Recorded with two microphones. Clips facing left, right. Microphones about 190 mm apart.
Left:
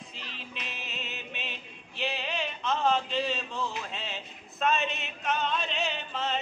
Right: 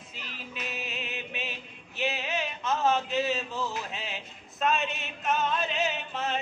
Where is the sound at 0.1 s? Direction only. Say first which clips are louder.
Right 1 dB; 5° right (ahead or behind).